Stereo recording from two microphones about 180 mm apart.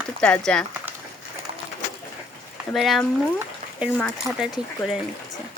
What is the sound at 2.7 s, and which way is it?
Speech, centre (ahead or behind).